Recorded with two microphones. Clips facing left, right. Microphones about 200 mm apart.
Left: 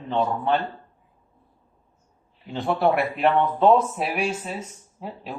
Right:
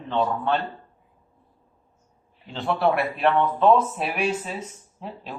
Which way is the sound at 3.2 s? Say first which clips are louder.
Left 1 dB; 20° left (ahead or behind).